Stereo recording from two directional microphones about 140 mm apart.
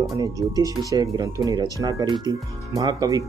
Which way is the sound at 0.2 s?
25° right (ahead or behind).